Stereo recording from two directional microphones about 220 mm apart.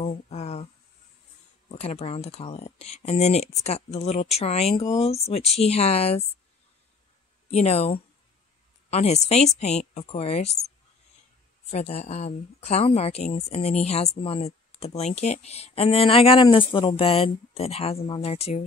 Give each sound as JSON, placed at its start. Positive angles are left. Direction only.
{"t": 0.0, "sound": "a sound", "side_deg": 30}
{"t": 1.7, "sound": "speech", "side_deg": 30}
{"t": 7.5, "sound": "speech", "side_deg": 30}
{"t": 11.7, "sound": "speech", "side_deg": 30}